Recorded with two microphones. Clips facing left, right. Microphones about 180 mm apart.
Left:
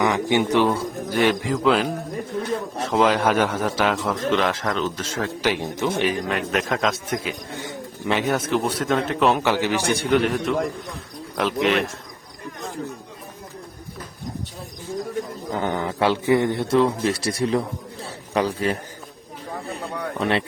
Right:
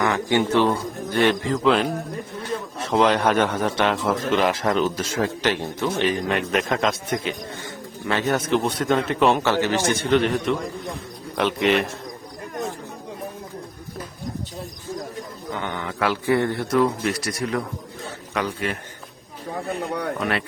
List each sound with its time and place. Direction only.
0.0 s a man's voice: 15° left (ahead or behind); by 5.3 s 10° right (ahead or behind)
5.4 s a man's voice: 10° left (ahead or behind)
6.0 s speech: 5° left (ahead or behind)
7.5 s bird: 15° left (ahead or behind)
8.3 s speech: 5° left (ahead or behind)
9.4 s a man's voice: 15° left (ahead or behind)
15.4 s a man's voice: 35° left (ahead or behind)